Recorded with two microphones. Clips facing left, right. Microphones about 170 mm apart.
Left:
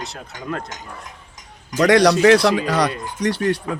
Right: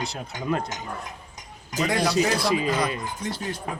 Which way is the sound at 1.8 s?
80° left.